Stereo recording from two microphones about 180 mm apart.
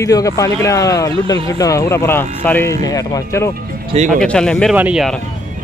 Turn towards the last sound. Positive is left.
turn(degrees=-5)  # may be behind; listen again after turning